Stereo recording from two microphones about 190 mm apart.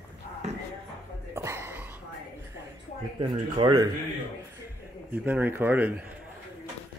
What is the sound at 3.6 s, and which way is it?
Speech, 25° right (ahead or behind).